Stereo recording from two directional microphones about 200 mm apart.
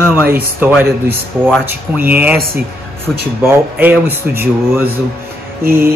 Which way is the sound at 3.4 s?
10° right (ahead or behind).